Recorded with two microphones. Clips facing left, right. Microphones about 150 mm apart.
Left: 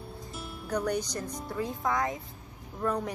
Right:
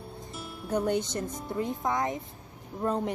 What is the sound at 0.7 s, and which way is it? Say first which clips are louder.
Speech: right 3 dB; 25° right (ahead or behind).